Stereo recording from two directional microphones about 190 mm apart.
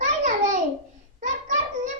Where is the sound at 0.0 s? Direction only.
40° right (ahead or behind).